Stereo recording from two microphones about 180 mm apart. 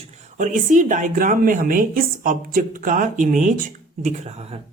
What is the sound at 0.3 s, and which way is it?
Speech, 45° right (ahead or behind).